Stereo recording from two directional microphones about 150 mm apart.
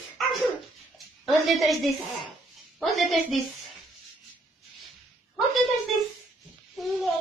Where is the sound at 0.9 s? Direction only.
Centre (ahead or behind).